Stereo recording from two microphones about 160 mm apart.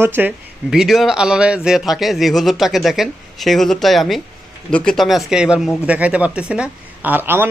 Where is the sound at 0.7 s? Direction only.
Centre (ahead or behind).